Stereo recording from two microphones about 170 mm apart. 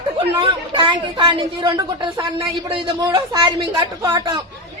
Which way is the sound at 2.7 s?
20° right (ahead or behind).